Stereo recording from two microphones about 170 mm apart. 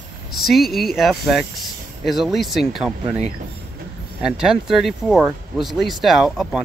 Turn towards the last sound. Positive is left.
turn(degrees=0)  # may be behind; listen again after turning